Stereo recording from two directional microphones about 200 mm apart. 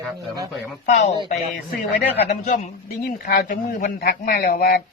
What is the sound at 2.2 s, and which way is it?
A man's voice, 35° left (ahead or behind).